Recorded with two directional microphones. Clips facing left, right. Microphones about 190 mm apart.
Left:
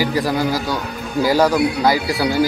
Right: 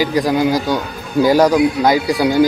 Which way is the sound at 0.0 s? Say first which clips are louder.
Right 4 dB; 15° right (ahead or behind).